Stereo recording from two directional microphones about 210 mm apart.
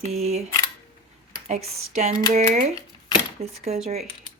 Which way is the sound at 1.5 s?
30° right (ahead or behind).